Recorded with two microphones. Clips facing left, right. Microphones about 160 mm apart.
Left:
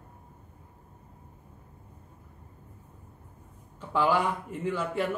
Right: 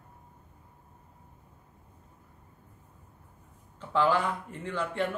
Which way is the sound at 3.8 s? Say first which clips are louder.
Even; 10° left (ahead or behind).